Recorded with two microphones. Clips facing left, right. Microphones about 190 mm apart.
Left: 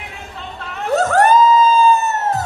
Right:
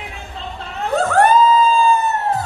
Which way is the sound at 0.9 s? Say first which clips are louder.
Left 1 dB; 40° left (ahead or behind).